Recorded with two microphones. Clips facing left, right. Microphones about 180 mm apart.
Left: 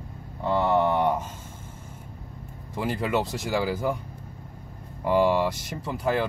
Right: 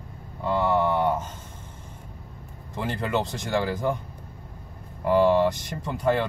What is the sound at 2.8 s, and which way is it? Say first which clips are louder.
Speech: left 1 dB; 5° left (ahead or behind).